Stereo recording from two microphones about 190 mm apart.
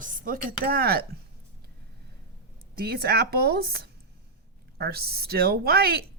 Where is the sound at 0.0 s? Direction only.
45° right (ahead or behind).